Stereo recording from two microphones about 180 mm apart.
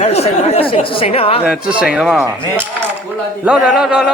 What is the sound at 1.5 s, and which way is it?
Speech, 5° right (ahead or behind).